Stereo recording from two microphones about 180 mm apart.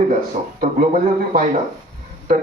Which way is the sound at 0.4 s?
40° right (ahead or behind).